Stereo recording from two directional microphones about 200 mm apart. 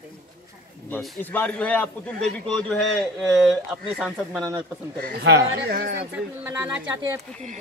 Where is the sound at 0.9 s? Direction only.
5° left (ahead or behind).